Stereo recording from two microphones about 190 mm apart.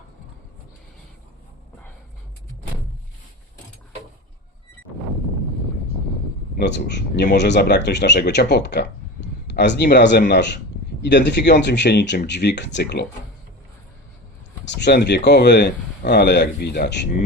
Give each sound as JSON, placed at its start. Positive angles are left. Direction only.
{"t": 6.6, "sound": "speech", "side_deg": 65}
{"t": 14.7, "sound": "speech", "side_deg": 60}